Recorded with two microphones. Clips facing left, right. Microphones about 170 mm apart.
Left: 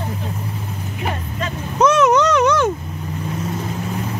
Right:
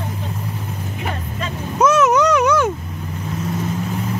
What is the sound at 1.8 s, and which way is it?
Vehicle, 5° right (ahead or behind).